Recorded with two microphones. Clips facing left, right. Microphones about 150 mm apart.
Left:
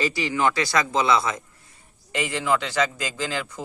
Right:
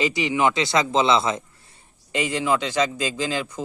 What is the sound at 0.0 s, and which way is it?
Speech, 20° right (ahead or behind).